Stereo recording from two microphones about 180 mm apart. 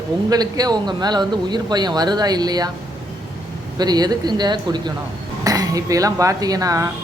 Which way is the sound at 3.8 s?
20° right (ahead or behind).